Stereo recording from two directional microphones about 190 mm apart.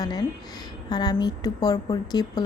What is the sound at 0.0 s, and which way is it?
A woman's voice, 20° left (ahead or behind).